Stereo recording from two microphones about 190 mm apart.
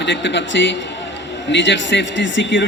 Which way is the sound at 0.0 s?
70° left (ahead or behind).